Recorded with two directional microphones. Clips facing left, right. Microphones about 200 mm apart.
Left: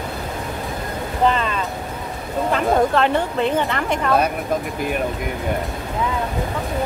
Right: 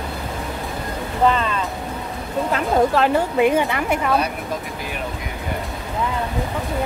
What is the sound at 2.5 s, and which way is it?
A woman's voice, 5° right (ahead or behind).